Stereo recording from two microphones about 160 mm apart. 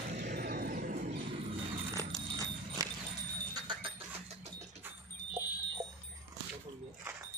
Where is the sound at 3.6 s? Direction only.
30° right (ahead or behind).